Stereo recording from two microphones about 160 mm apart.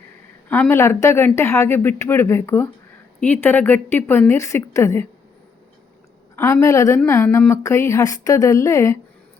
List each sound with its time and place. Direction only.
0.4 s speech: 10° left (ahead or behind)
6.3 s a woman's voice: 20° left (ahead or behind)